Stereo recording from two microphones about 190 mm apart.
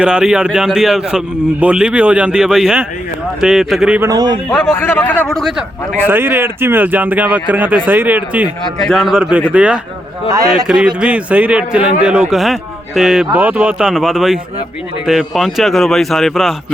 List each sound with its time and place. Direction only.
0.0 s a man's voice: 5° right (ahead or behind)
4.1 s a man's voice: 20° right (ahead or behind)
4.7 s speech: 10° left (ahead or behind)
6.1 s a man's voice: 10° right (ahead or behind)
10.2 s a man's voice: 20° right (ahead or behind)
10.7 s a man's voice: 5° right (ahead or behind)